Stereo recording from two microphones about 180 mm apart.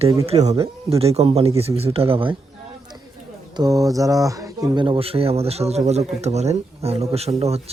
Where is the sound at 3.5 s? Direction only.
20° right (ahead or behind).